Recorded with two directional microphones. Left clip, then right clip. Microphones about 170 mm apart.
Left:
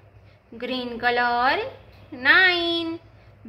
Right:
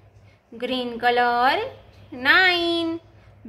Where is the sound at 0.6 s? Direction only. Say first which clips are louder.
Right 2 dB; 10° right (ahead or behind).